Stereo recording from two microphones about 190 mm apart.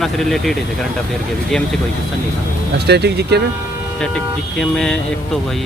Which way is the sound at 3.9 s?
5° left (ahead or behind).